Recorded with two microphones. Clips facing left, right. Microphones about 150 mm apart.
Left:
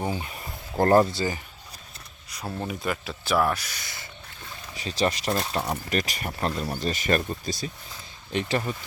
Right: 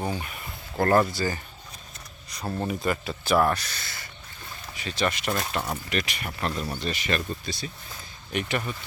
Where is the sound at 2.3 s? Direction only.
5° left (ahead or behind).